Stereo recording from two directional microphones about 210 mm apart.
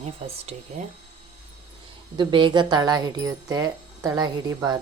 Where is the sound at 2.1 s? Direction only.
20° right (ahead or behind).